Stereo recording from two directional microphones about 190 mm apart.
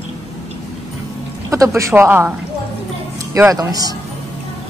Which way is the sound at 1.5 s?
15° right (ahead or behind).